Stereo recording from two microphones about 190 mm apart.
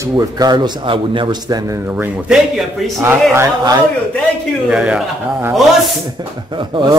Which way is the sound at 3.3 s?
15° right (ahead or behind).